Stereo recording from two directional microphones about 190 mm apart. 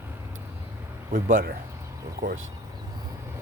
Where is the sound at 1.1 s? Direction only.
45° right (ahead or behind).